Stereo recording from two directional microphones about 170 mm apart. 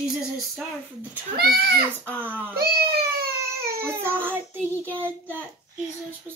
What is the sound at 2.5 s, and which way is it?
Baby cry, 65° right (ahead or behind).